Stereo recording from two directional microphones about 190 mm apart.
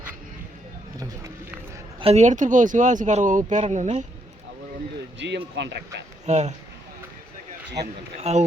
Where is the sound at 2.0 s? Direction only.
35° right (ahead or behind).